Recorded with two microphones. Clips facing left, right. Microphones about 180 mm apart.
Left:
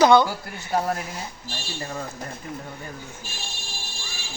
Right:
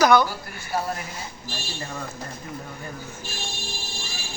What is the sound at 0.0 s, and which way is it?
Speech, 25° left (ahead or behind).